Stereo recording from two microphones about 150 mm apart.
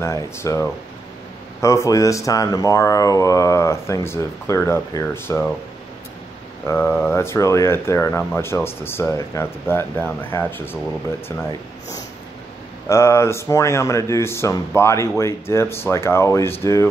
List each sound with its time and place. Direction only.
0.0 s speech: 20° left (ahead or behind)
6.7 s speech: 15° left (ahead or behind)
12.8 s speech: 20° left (ahead or behind)